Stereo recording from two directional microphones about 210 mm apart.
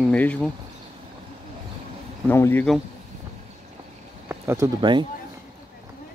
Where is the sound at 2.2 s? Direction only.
10° left (ahead or behind).